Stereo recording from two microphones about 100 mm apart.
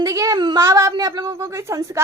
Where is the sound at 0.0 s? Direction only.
35° right (ahead or behind).